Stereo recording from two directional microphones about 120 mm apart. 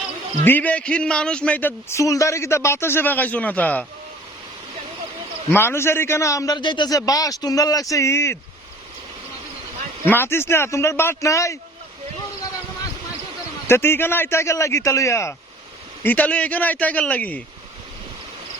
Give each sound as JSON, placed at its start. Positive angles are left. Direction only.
{"t": 0.4, "sound": "a man's voice", "side_deg": 15}
{"t": 2.0, "sound": "a man's voice", "side_deg": 25}
{"t": 5.5, "sound": "a man's voice", "side_deg": 20}
{"t": 6.6, "sound": "a man's voice", "side_deg": 40}
{"t": 10.1, "sound": "a man's voice", "side_deg": 20}
{"t": 13.7, "sound": "a man's voice", "side_deg": 20}
{"t": 16.0, "sound": "a man's voice", "side_deg": 10}